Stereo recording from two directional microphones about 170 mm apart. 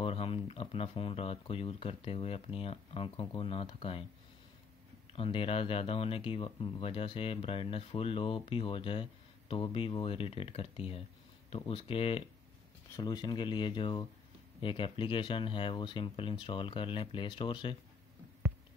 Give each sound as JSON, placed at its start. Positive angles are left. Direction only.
{"t": 0.0, "sound": "speech", "side_deg": 35}
{"t": 5.1, "sound": "speech", "side_deg": 35}